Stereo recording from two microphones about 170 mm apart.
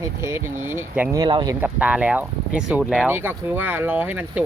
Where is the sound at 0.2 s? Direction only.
15° right (ahead or behind).